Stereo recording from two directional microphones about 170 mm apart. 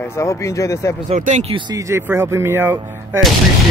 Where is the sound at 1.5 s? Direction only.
25° right (ahead or behind).